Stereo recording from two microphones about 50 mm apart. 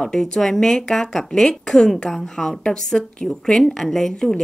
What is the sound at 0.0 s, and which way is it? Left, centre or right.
Speech, centre.